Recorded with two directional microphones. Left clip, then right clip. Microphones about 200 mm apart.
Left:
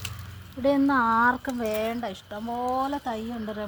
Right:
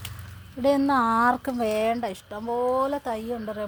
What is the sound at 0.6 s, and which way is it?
Speech, 50° right (ahead or behind).